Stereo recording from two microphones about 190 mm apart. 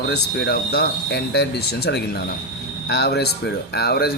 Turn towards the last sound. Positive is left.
turn(degrees=55)  # may be behind; listen again after turning